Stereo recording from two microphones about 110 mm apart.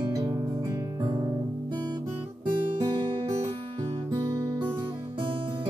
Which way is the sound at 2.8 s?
45° right (ahead or behind).